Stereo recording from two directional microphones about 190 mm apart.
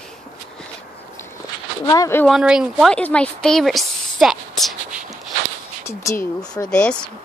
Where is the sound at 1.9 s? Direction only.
15° left (ahead or behind).